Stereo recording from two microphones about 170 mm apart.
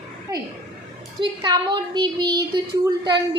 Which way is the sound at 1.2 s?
25° right (ahead or behind).